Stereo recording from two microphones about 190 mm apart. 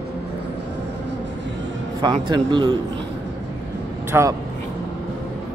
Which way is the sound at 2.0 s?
25° right (ahead or behind).